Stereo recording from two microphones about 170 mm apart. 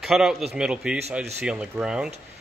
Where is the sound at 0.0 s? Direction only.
Centre (ahead or behind).